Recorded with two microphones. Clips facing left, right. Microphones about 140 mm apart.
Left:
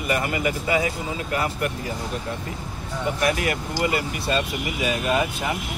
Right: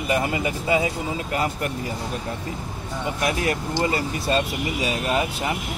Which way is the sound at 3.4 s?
30° right (ahead or behind).